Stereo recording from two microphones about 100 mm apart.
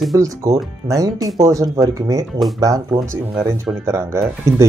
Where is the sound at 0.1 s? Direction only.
35° right (ahead or behind).